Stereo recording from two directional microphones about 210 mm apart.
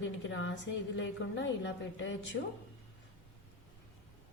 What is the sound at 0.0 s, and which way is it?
A woman's voice, 60° left (ahead or behind).